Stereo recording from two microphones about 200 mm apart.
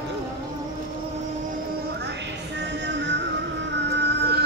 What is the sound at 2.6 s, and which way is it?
Music, 60° right (ahead or behind).